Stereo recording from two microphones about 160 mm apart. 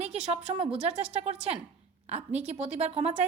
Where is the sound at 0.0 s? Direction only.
45° right (ahead or behind).